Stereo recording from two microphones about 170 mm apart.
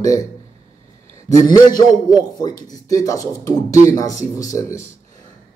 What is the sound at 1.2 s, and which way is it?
Speech, 20° left (ahead or behind).